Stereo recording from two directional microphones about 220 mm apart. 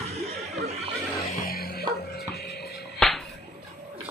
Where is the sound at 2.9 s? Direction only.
Centre (ahead or behind).